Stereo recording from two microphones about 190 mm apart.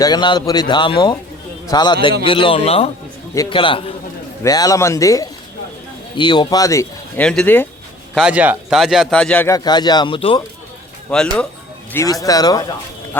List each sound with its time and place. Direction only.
0.0 s a man's voice: 25° left (ahead or behind)
8.1 s a man's voice: 5° right (ahead or behind)
9.6 s a man's voice: 20° left (ahead or behind)
11.1 s a man's voice: 5° left (ahead or behind)
11.9 s a man's voice: 20° left (ahead or behind)